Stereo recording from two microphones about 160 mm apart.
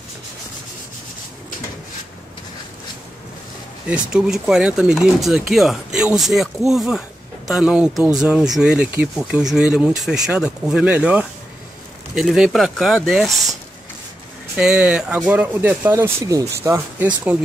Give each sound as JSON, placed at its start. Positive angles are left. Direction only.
{"t": 3.9, "sound": "speech", "side_deg": -5}
{"t": 14.6, "sound": "speech", "side_deg": -5}